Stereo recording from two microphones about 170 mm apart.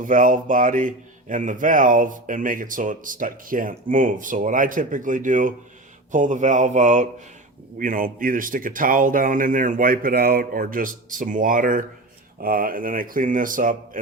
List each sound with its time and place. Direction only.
0.0 s speech: 50° right (ahead or behind)